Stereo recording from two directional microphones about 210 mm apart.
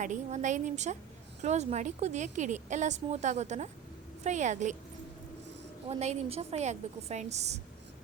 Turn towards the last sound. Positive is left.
turn(degrees=-30)  # may be behind; listen again after turning